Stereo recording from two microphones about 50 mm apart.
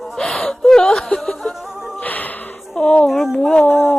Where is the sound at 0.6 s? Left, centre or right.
Centre.